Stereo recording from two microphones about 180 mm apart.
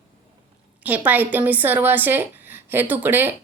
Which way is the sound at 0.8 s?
10° right (ahead or behind).